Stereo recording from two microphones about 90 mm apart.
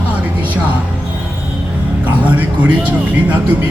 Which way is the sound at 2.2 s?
15° right (ahead or behind).